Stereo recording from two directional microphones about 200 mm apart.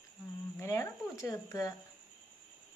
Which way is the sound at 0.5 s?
15° left (ahead or behind).